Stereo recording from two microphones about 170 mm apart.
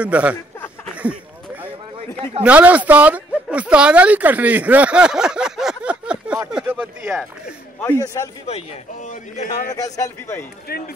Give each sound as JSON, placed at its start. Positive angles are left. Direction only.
{"t": 0.0, "sound": "speech", "side_deg": -10}
{"t": 2.4, "sound": "speech", "side_deg": -10}
{"t": 7.8, "sound": "a man's voice", "side_deg": 20}
{"t": 8.5, "sound": "a man's voice", "side_deg": 40}
{"t": 9.9, "sound": "a man's voice", "side_deg": 15}
{"t": 10.7, "sound": "speech", "side_deg": 65}